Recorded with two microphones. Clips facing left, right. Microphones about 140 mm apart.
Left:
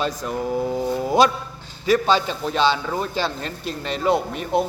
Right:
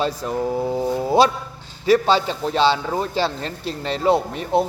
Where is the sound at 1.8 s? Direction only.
30° right (ahead or behind).